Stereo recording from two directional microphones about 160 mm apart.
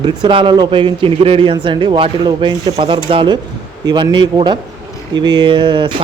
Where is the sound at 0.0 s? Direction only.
30° right (ahead or behind).